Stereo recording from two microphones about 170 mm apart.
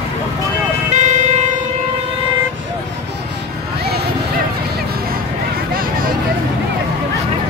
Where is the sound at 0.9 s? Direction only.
45° right (ahead or behind).